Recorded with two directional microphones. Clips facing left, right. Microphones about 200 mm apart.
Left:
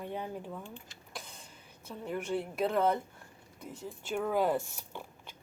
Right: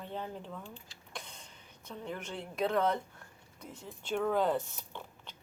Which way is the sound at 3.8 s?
5° left (ahead or behind).